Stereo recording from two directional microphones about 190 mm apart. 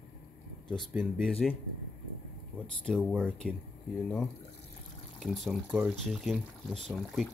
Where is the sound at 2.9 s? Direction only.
5° right (ahead or behind).